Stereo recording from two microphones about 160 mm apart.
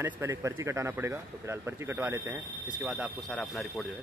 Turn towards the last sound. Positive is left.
turn(degrees=0)  # may be behind; listen again after turning